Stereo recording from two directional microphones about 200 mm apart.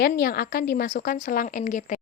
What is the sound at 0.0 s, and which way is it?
A woman's voice, 50° left (ahead or behind).